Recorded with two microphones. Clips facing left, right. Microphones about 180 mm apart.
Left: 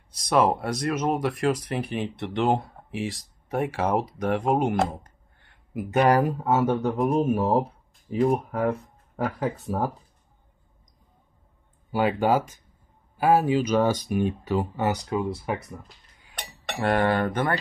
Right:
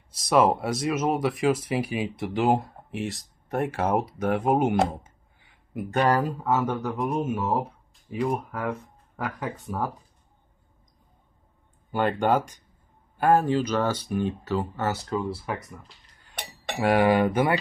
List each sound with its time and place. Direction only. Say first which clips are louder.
0.1 s speech: right 1 dB; centre (ahead or behind)
5.9 s speech: left 3 dB; 10° left (ahead or behind)
6.4 s speech: left 3 dB; 25° left (ahead or behind)
11.9 s speech: left 1 dB; 5° left (ahead or behind); by 15.8 s 20° left (ahead or behind)
16.3 s speech: right 1 dB; 10° right (ahead or behind)